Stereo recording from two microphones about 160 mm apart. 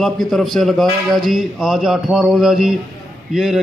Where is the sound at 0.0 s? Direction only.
Centre (ahead or behind).